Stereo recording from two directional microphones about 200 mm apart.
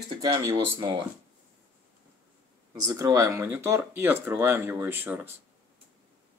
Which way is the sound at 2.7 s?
15° right (ahead or behind).